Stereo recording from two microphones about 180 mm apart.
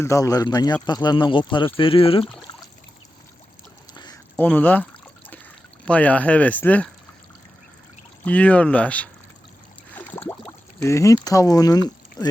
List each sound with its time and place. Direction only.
0.0 s speech: 15° left (ahead or behind)
3.9 s a sound: 25° left (ahead or behind)
4.4 s speech: 10° left (ahead or behind)
8.2 s speech: 10° left (ahead or behind)
9.9 s a sound: 10° left (ahead or behind)
12.2 s speech: 25° left (ahead or behind)